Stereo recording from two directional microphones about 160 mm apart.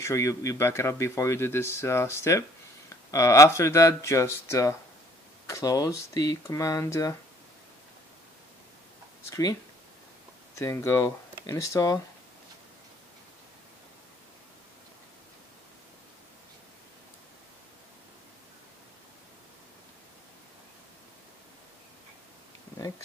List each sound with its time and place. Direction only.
0.0 s speech: 20° left (ahead or behind)
9.3 s speech: 25° left (ahead or behind)
10.6 s speech: 20° left (ahead or behind)